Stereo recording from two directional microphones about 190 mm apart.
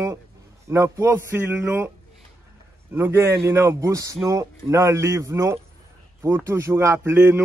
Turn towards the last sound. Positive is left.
turn(degrees=-10)  # may be behind; listen again after turning